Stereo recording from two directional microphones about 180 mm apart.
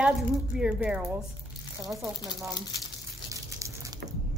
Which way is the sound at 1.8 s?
15° right (ahead or behind).